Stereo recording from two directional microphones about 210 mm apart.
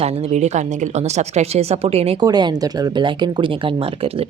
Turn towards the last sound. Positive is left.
turn(degrees=-20)  # may be behind; listen again after turning